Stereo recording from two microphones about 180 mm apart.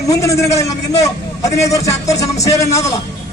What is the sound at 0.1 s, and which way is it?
A man's voice, 15° left (ahead or behind).